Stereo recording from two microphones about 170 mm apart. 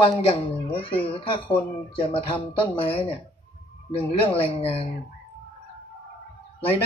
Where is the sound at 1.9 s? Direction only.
30° left (ahead or behind).